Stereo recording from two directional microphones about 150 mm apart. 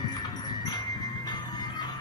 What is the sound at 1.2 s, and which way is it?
Music, 30° left (ahead or behind).